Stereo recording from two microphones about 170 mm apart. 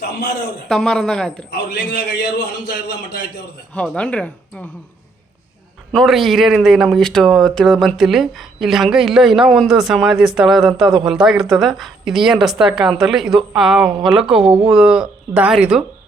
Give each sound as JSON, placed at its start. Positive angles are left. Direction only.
{"t": 0.7, "sound": "speech", "side_deg": 5}
{"t": 1.5, "sound": "a man's voice", "side_deg": 70}
{"t": 3.8, "sound": "speech", "side_deg": 5}
{"t": 5.9, "sound": "speech", "side_deg": 0}